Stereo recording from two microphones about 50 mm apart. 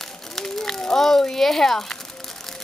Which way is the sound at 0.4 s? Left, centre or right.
Centre.